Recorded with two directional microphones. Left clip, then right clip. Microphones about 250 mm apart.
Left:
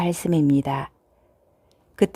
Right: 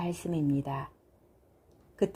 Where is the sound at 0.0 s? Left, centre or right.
Left.